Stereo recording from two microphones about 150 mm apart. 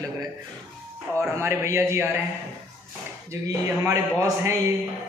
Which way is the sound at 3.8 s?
20° right (ahead or behind).